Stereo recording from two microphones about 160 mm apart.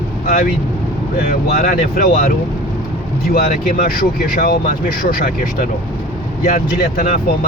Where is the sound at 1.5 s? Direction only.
65° left (ahead or behind).